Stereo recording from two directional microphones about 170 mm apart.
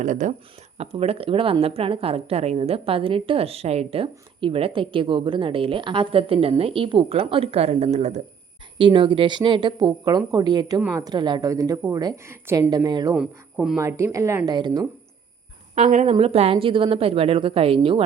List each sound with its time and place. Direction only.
0.0 s speech: 45° right (ahead or behind)
0.8 s a woman's voice: 35° right (ahead or behind)
8.8 s speech: 30° right (ahead or behind)
13.1 s speech: 5° right (ahead or behind)
13.7 s a woman's voice: 15° right (ahead or behind)
15.7 s a woman's voice: 45° right (ahead or behind)